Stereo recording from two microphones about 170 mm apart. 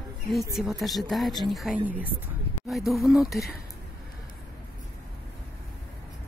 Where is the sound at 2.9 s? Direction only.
Centre (ahead or behind).